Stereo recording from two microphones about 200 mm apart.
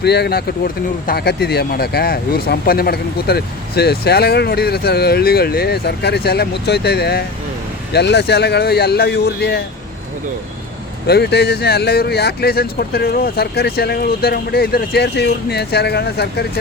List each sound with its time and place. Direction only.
0.0 s speech: 55° left (ahead or behind)
11.0 s speech: 55° left (ahead or behind)